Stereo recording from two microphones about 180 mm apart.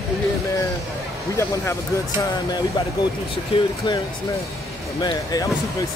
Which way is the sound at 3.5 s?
25° left (ahead or behind).